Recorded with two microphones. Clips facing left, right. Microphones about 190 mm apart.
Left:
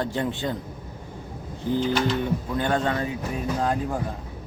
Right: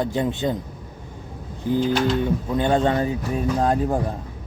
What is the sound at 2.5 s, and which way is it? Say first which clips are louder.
A man's voice: right 5 dB; 20° right (ahead or behind).